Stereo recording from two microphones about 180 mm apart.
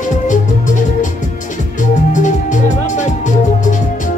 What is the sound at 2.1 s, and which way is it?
Music, 45° left (ahead or behind).